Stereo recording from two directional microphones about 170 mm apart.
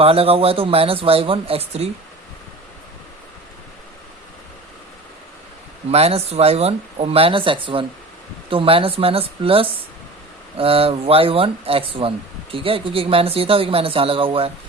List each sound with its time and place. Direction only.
0.0 s speech: 35° right (ahead or behind)
5.9 s speech: 35° right (ahead or behind)